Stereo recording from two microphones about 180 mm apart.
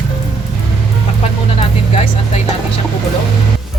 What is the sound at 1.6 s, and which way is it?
Speech, 35° left (ahead or behind).